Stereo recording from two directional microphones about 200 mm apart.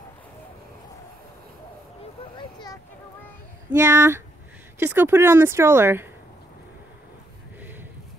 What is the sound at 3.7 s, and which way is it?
Speech, 15° right (ahead or behind).